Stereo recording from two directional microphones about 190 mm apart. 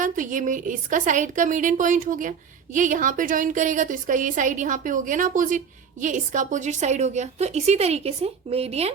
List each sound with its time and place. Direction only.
0.0 s a woman's voice: 45° right (ahead or behind)